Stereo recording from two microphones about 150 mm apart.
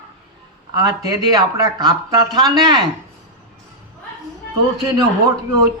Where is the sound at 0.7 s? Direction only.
25° right (ahead or behind).